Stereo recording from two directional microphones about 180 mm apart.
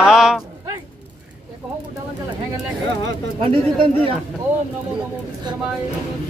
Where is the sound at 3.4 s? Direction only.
30° right (ahead or behind).